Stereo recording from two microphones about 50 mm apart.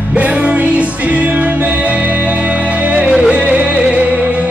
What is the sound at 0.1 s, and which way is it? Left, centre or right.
Music, right.